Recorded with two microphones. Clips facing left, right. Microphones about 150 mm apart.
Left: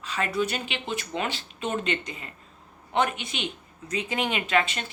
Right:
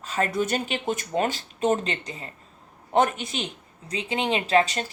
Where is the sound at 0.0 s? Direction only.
45° right (ahead or behind).